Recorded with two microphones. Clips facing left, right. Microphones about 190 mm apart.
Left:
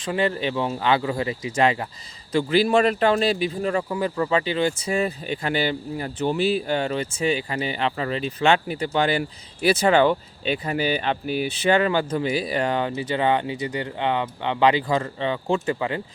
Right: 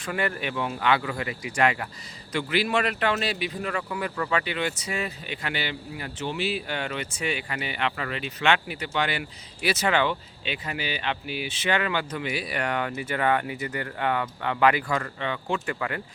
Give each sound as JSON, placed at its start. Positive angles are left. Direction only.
{"t": 0.0, "sound": "speech", "side_deg": 25}